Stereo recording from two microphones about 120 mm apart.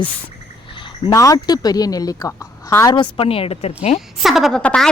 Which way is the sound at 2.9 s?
45° left (ahead or behind).